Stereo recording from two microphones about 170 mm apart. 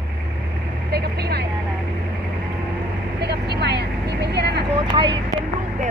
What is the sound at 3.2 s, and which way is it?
Speech, 75° right (ahead or behind).